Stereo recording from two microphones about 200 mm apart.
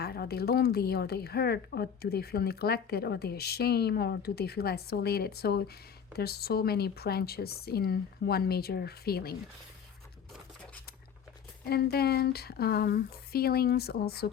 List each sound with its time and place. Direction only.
0.0 s a woman's voice: 50° left (ahead or behind)
11.7 s a woman's voice: 50° left (ahead or behind)